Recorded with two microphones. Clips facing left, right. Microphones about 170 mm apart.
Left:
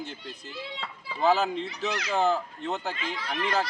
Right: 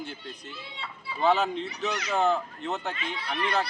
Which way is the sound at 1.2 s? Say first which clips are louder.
Even; centre (ahead or behind).